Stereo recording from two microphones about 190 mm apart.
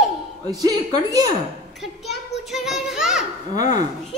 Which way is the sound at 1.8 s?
Centre (ahead or behind).